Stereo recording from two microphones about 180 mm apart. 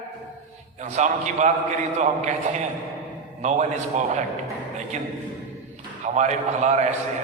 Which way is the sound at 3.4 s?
40° right (ahead or behind).